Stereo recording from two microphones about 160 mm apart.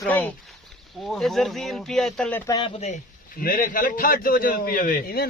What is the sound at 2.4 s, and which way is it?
Speech, 25° left (ahead or behind).